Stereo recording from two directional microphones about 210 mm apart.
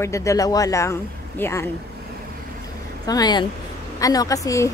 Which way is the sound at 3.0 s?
20° left (ahead or behind).